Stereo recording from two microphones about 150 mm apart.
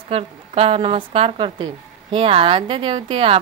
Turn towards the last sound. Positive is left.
turn(degrees=-40)  # may be behind; listen again after turning